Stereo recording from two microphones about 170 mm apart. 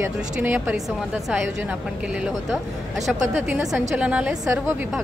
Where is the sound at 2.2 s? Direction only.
Centre (ahead or behind).